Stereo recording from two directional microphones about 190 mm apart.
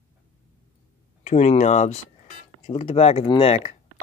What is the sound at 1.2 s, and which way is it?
Speech, 35° left (ahead or behind).